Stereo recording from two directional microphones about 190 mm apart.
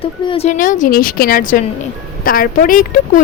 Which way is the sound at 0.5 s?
45° left (ahead or behind).